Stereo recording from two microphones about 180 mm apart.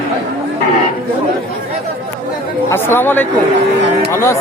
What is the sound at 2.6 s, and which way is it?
Speech, 10° left (ahead or behind).